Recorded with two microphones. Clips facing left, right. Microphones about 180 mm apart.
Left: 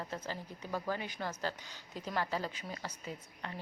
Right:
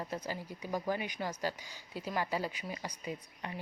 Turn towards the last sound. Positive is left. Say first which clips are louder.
# right 3 dB
turn(degrees=-15)  # may be behind; listen again after turning